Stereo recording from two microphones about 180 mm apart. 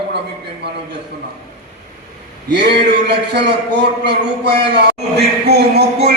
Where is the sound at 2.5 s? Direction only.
70° right (ahead or behind).